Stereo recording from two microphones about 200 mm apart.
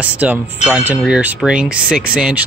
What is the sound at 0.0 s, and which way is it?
Speech, 5° right (ahead or behind).